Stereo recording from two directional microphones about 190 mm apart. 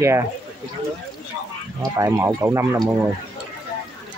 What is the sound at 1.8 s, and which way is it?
Speech, 15° right (ahead or behind).